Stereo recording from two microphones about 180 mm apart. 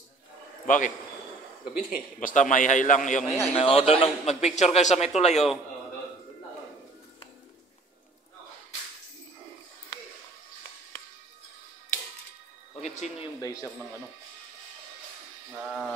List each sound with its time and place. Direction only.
0.7 s a man's voice: 45° left (ahead or behind)
3.3 s a man's voice: 30° left (ahead or behind)
12.8 s a sound: 40° left (ahead or behind)
13.4 s a man's voice: 20° left (ahead or behind)